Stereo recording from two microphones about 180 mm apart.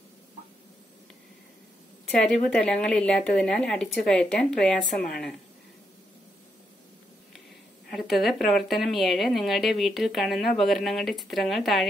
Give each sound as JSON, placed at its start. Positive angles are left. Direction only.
{"t": 2.0, "sound": "speech", "side_deg": 5}
{"t": 7.9, "sound": "speech", "side_deg": 0}